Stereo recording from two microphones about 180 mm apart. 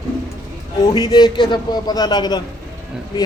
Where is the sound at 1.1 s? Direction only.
25° left (ahead or behind).